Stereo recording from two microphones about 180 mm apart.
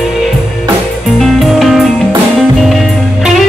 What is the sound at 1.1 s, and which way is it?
Music, centre (ahead or behind).